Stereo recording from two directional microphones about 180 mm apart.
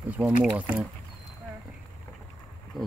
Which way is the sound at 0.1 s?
10° right (ahead or behind).